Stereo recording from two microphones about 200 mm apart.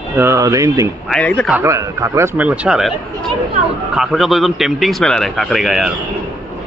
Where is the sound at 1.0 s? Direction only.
5° left (ahead or behind).